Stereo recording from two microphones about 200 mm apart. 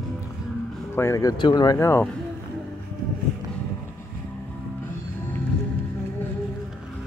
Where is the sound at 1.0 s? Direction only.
15° left (ahead or behind).